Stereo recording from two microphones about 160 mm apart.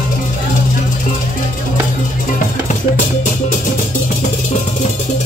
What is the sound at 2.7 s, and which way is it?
Music, 50° left (ahead or behind).